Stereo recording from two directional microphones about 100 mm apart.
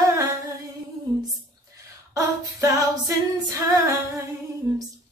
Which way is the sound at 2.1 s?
35° right (ahead or behind).